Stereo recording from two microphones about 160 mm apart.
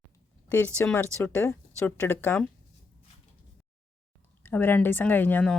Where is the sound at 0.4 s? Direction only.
10° left (ahead or behind).